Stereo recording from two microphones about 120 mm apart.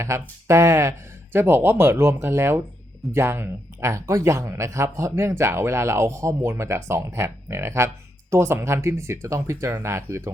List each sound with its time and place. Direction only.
0.0 s speech: 25° right (ahead or behind)